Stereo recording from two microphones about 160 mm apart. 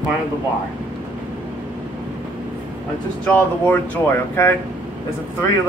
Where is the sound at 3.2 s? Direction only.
10° left (ahead or behind).